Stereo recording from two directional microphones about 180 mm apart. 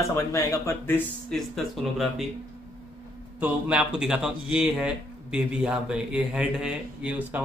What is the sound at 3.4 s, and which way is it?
A man's voice, 5° right (ahead or behind).